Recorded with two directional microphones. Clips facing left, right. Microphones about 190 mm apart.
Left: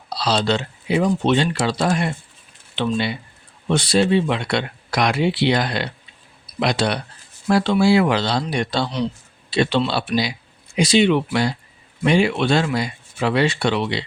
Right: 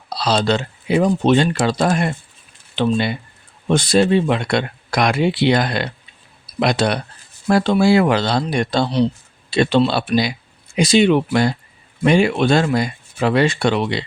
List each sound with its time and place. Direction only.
0.2 s speech: 50° right (ahead or behind)